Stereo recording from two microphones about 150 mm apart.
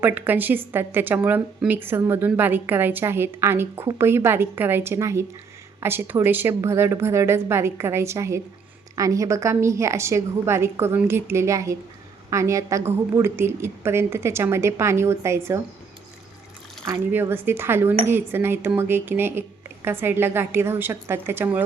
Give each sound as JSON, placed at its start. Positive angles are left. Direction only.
{"t": 0.0, "sound": "a woman's voice", "side_deg": -10}
{"t": 16.8, "sound": "a woman's voice", "side_deg": -15}